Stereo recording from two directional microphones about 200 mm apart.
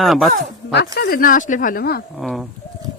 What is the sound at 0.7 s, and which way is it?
Speech, 55° left (ahead or behind).